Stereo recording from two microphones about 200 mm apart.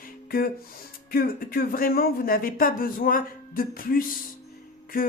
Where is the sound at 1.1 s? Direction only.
45° left (ahead or behind).